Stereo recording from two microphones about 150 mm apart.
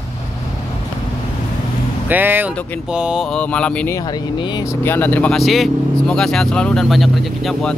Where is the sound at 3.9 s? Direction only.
25° left (ahead or behind).